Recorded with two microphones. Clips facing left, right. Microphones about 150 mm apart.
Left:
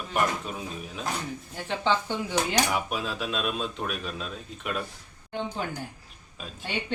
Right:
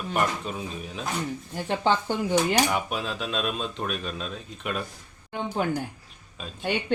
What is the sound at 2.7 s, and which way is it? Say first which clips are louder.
Speech: right 1 dB; centre (ahead or behind).